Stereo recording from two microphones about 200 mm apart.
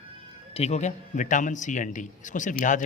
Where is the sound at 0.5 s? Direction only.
35° left (ahead or behind).